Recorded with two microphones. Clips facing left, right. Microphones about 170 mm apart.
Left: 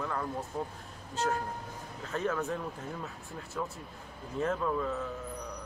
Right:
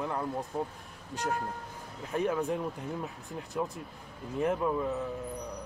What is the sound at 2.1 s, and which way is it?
A man's voice, 15° right (ahead or behind).